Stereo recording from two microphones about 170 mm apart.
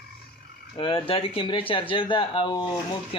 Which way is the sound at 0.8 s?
30° left (ahead or behind).